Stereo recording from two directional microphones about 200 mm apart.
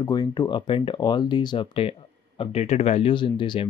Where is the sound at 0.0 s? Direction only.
20° left (ahead or behind).